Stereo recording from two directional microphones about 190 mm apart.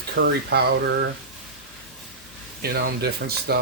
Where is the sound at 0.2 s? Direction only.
60° right (ahead or behind).